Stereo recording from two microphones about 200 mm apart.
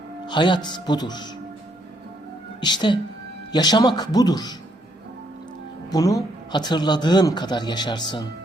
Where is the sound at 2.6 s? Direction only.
20° left (ahead or behind).